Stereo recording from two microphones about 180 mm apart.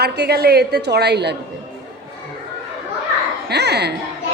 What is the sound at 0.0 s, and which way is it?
Speech, 65° right (ahead or behind).